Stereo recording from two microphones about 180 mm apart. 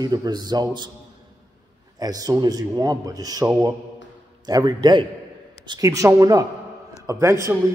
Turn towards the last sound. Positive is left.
turn(degrees=-15)  # may be behind; listen again after turning